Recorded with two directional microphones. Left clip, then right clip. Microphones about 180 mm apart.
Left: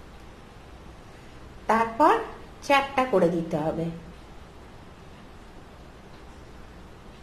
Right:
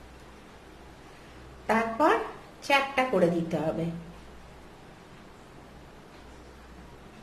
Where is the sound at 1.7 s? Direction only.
30° left (ahead or behind).